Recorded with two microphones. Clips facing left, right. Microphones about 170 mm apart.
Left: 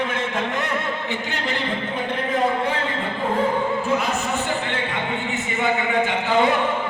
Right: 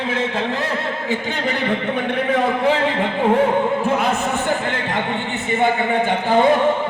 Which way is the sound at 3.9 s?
55° right (ahead or behind).